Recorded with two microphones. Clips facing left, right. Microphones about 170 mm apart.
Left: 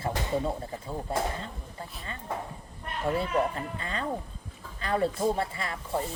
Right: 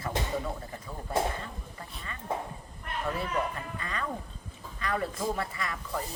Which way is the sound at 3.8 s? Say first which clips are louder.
Left 1 dB; 30° left (ahead or behind).